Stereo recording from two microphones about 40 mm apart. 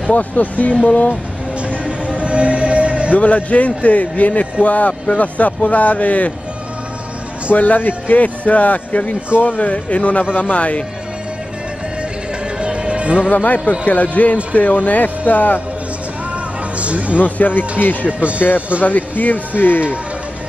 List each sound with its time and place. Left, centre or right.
0.1 s a man's voice: left
1.9 s music: right
3.1 s a man's voice: left
7.5 s a man's voice: left
12.5 s music: right
13.3 s a man's voice: left
16.7 s music: right
17.2 s speech: left
18.4 s a man's voice: left